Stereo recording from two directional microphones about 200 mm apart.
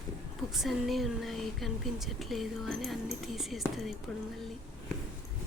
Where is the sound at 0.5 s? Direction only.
Centre (ahead or behind).